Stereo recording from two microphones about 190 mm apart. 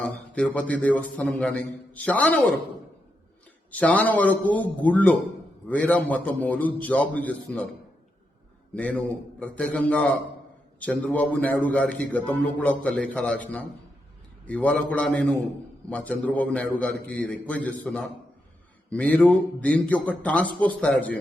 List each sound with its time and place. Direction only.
0.0 s a man's voice: 5° left (ahead or behind)
3.7 s a man's voice: 10° left (ahead or behind)
8.7 s a man's voice: 5° left (ahead or behind)